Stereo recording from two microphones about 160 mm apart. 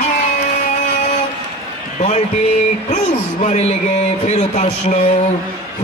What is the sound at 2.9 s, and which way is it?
A man's voice, 45° left (ahead or behind).